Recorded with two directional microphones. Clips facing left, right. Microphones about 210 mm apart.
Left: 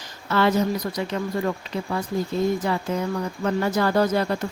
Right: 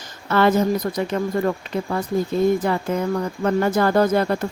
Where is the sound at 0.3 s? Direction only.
50° right (ahead or behind).